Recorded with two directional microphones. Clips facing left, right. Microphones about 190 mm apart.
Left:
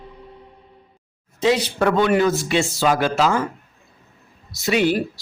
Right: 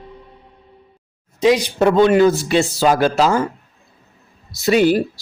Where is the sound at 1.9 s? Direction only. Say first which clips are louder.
Right 5 dB; 30° right (ahead or behind).